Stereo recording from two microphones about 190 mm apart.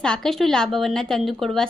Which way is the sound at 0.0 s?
5° left (ahead or behind).